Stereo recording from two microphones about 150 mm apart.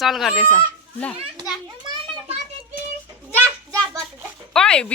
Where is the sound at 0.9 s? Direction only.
10° left (ahead or behind).